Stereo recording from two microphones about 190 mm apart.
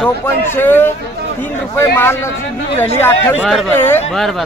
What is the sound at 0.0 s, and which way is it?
A man's voice, 10° left (ahead or behind).